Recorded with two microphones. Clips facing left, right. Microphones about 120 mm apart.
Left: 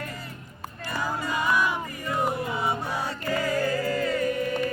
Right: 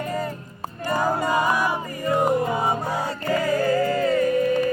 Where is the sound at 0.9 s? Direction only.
45° right (ahead or behind).